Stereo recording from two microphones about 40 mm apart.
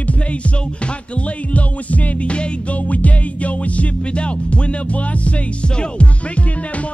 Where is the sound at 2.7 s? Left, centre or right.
Left.